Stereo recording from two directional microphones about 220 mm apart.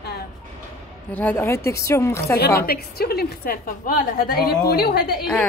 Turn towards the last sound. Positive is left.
turn(degrees=45)  # may be behind; listen again after turning